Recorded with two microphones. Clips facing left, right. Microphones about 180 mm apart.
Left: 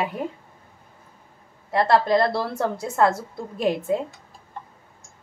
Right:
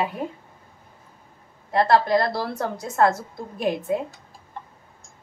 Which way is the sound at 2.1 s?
30° left (ahead or behind).